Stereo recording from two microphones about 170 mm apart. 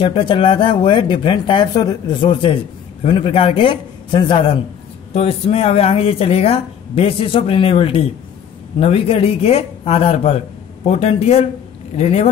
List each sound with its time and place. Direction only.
0.0 s speech: 30° left (ahead or behind)